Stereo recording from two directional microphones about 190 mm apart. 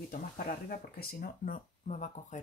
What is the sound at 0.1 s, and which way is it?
Speech, 50° left (ahead or behind).